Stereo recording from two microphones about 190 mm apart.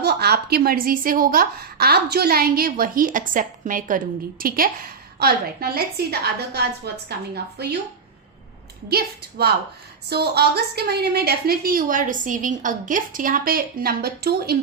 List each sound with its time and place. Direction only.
0.0 s a woman's voice: 60° right (ahead or behind)
10.1 s a woman's voice: 60° right (ahead or behind)